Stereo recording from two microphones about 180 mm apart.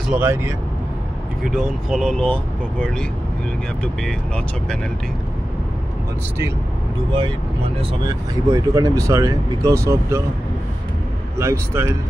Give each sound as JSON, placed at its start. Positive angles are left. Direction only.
{"t": 0.1, "sound": "speech", "side_deg": -10}
{"t": 1.4, "sound": "speech", "side_deg": 0}
{"t": 7.1, "sound": "speech", "side_deg": -25}
{"t": 11.3, "sound": "speech", "side_deg": -15}